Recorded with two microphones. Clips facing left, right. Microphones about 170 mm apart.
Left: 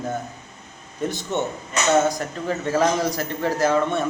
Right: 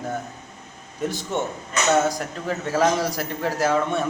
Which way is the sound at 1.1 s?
10° right (ahead or behind).